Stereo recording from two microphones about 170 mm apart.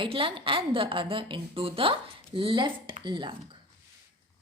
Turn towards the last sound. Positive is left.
turn(degrees=-25)  # may be behind; listen again after turning